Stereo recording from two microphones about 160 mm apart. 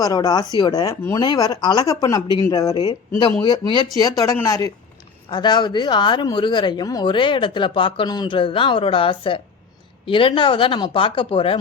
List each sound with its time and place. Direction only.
0.0 s speech: 25° left (ahead or behind)